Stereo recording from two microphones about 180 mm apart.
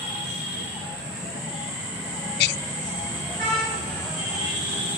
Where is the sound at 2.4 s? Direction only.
70° left (ahead or behind).